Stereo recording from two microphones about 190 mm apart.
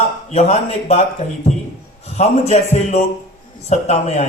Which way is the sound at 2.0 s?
35° left (ahead or behind).